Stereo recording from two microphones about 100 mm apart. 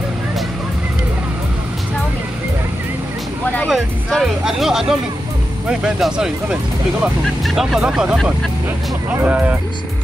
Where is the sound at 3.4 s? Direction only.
15° left (ahead or behind).